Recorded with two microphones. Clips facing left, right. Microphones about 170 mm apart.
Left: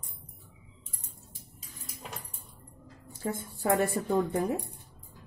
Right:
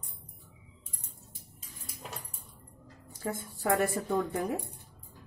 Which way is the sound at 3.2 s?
30° left (ahead or behind).